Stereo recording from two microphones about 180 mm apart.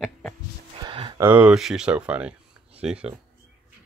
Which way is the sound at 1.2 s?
10° right (ahead or behind).